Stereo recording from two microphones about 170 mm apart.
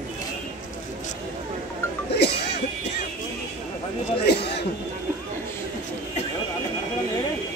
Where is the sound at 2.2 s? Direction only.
75° left (ahead or behind).